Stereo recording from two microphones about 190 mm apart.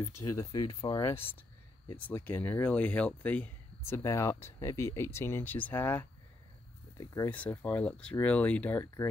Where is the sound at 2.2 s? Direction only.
10° left (ahead or behind).